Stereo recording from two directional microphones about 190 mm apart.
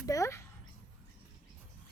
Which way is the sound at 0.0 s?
15° left (ahead or behind).